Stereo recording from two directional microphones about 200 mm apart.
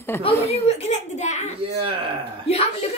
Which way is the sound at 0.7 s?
35° left (ahead or behind).